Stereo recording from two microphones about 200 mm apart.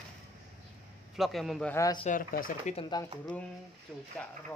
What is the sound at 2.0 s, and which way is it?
Speech, 45° left (ahead or behind).